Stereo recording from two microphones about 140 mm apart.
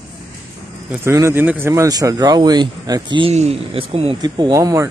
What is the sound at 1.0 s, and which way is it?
Speech, 20° right (ahead or behind).